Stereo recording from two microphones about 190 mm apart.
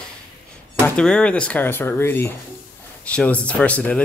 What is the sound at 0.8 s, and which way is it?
Speech, 5° left (ahead or behind).